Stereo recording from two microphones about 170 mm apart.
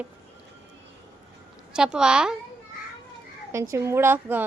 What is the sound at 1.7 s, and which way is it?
Speech, 5° right (ahead or behind).